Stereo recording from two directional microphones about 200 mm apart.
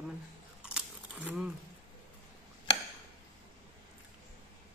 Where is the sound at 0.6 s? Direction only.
5° right (ahead or behind).